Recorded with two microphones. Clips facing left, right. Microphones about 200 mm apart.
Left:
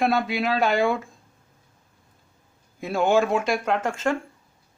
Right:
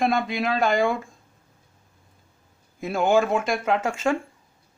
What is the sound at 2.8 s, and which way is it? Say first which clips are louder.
A man's voice: even; centre (ahead or behind).